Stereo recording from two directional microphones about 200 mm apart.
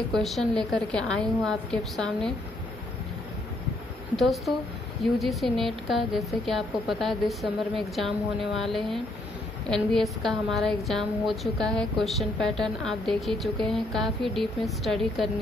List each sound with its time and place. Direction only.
0.1 s a woman's voice: centre (ahead or behind)
4.2 s a woman's voice: centre (ahead or behind)